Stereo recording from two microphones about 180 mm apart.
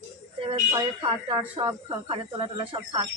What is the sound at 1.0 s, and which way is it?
Speech, 25° right (ahead or behind).